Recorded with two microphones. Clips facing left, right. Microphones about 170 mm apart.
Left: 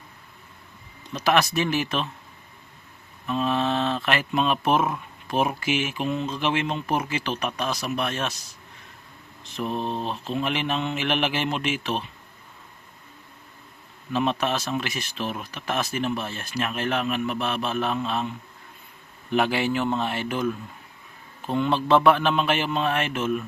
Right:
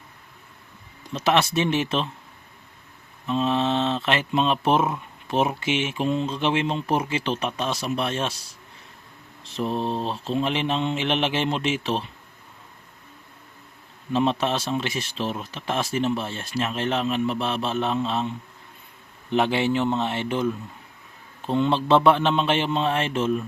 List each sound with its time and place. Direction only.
1.1 s speech: 25° right (ahead or behind)
3.2 s speech: 25° right (ahead or behind)
14.1 s speech: 30° right (ahead or behind)